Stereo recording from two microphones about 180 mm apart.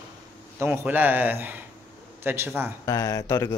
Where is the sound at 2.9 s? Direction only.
20° left (ahead or behind).